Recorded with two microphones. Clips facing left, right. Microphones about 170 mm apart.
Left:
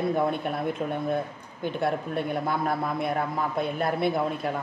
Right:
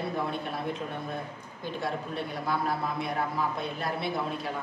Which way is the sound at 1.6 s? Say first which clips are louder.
Left 6 dB; 55° left (ahead or behind).